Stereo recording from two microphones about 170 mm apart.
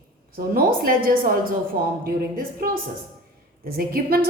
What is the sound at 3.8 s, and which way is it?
Speech, 60° right (ahead or behind).